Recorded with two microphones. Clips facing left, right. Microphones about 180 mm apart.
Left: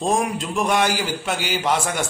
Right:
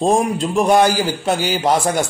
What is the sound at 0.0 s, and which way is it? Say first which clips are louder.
A man's voice: right 5 dB; 35° right (ahead or behind).